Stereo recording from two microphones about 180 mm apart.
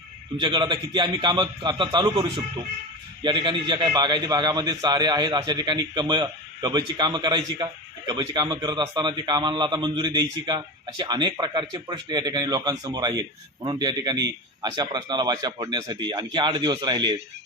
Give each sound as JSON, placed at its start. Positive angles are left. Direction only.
{"t": 0.3, "sound": "a man's voice", "side_deg": -25}